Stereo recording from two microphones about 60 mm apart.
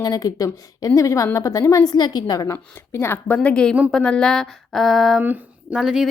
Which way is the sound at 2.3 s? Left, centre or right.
Left.